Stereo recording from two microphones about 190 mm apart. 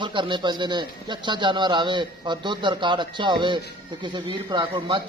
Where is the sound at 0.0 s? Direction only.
25° right (ahead or behind).